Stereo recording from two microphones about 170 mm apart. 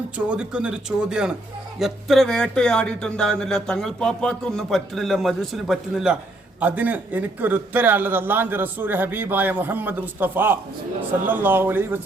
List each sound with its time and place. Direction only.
0.3 s a man's voice: 5° right (ahead or behind)